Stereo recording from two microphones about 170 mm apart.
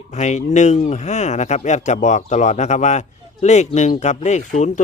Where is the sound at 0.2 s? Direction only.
45° left (ahead or behind).